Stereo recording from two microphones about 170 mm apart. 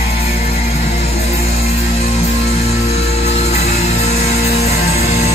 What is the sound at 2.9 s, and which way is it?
Music, 40° left (ahead or behind).